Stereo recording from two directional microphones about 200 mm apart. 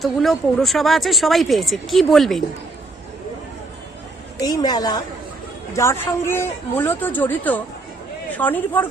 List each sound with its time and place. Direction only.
0.0 s speech: centre (ahead or behind)
4.4 s a woman's voice: 20° left (ahead or behind)